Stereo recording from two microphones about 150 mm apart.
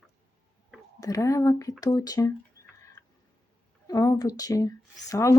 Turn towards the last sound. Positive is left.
turn(degrees=20)  # may be behind; listen again after turning